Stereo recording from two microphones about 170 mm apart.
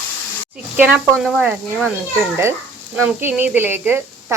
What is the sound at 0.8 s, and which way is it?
A woman's voice, 5° right (ahead or behind).